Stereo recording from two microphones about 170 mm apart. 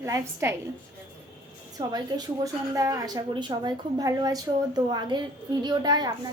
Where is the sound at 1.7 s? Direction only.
20° right (ahead or behind).